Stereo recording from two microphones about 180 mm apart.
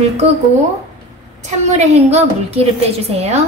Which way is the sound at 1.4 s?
40° right (ahead or behind).